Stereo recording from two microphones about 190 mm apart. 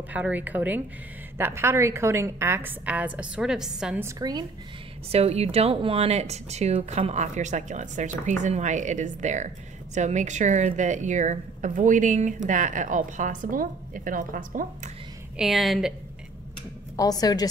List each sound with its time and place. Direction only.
0.1 s a woman's voice: 10° right (ahead or behind)
4.0 s a woman's voice: 20° right (ahead or behind)
5.1 s a woman's voice: 35° right (ahead or behind)
15.3 s a woman's voice: centre (ahead or behind)
16.9 s a woman's voice: 20° left (ahead or behind)